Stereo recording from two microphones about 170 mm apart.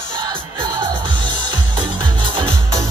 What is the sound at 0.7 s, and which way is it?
Music, 25° right (ahead or behind).